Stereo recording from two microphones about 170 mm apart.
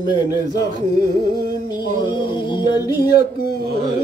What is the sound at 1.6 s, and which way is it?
Music, 25° left (ahead or behind).